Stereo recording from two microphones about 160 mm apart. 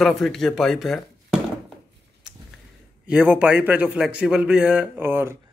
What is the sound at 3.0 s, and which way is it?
A man's voice, 5° right (ahead or behind).